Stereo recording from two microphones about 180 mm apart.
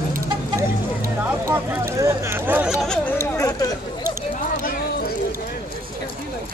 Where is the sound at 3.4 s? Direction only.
20° left (ahead or behind).